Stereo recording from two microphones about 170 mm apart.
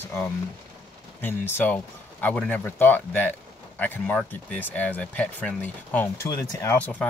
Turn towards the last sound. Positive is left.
turn(degrees=10)  # may be behind; listen again after turning